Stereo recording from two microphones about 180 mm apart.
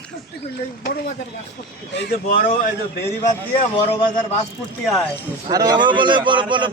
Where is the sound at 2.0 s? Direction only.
55° left (ahead or behind).